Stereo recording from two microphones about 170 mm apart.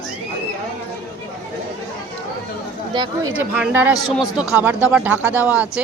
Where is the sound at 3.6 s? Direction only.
10° right (ahead or behind).